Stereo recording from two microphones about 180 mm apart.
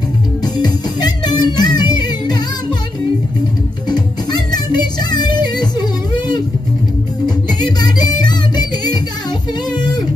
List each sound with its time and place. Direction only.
0.6 s music: 25° left (ahead or behind)
3.9 s music: 25° left (ahead or behind)